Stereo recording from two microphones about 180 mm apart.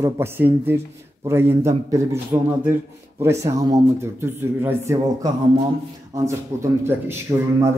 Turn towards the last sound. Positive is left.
turn(degrees=-15)  # may be behind; listen again after turning